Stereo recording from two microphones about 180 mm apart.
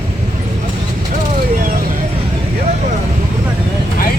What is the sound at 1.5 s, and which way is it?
Vehicle, 50° right (ahead or behind).